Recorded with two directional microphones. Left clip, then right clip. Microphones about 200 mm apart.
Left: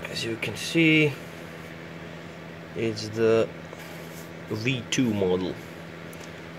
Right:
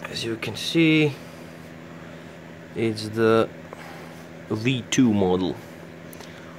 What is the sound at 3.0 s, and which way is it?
Speech, 25° right (ahead or behind).